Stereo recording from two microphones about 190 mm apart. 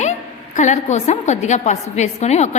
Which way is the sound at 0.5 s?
40° left (ahead or behind).